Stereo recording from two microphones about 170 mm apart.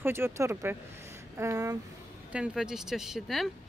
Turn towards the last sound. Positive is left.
turn(degrees=0)  # may be behind; listen again after turning